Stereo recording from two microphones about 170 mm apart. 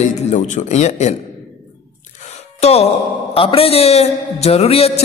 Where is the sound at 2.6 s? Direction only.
35° left (ahead or behind).